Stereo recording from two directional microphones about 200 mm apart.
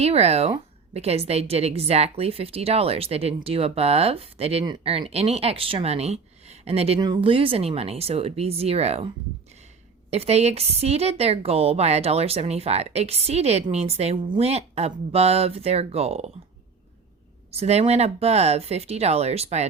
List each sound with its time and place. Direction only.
0.0 s a woman's voice: 30° right (ahead or behind)
17.5 s a woman's voice: 30° right (ahead or behind)